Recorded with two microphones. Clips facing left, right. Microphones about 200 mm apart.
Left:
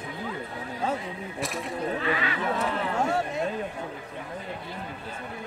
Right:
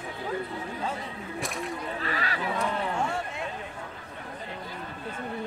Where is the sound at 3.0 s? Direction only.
40° left (ahead or behind).